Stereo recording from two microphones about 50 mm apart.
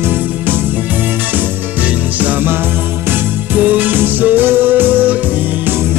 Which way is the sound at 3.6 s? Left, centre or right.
Right.